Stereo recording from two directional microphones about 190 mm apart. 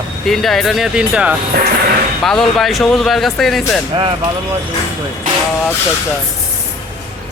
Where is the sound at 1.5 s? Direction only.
55° right (ahead or behind).